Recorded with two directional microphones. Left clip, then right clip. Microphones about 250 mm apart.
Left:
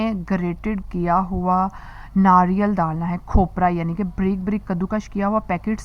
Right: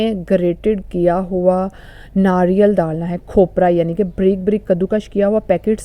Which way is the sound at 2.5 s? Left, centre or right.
Centre.